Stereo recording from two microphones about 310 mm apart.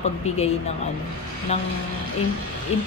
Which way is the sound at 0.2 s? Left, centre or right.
Left.